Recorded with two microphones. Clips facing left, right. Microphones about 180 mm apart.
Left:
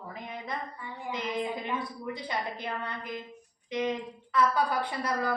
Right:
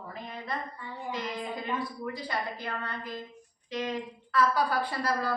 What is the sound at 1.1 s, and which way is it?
Speech, 20° left (ahead or behind).